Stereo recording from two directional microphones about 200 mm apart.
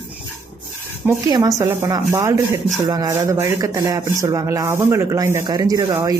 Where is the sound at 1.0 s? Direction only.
15° right (ahead or behind).